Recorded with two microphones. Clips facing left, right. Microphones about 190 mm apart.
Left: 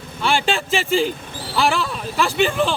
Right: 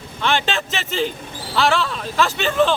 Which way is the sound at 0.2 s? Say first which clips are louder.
Left 1 dB; 10° left (ahead or behind).